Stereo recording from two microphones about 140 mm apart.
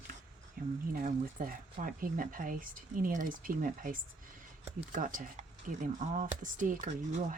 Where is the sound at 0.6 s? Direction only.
90° right.